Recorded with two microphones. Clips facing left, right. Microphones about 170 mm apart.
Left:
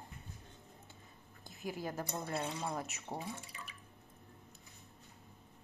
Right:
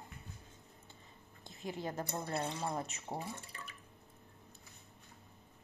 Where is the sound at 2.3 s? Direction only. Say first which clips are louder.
Right 1 dB; 10° right (ahead or behind).